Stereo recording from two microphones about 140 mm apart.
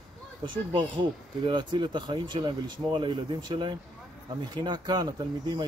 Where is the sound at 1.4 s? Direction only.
35° right (ahead or behind).